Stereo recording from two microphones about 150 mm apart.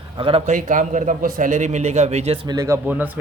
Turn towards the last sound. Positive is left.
turn(degrees=-15)  # may be behind; listen again after turning